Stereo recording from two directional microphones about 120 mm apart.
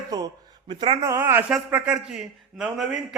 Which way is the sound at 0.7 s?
45° right (ahead or behind).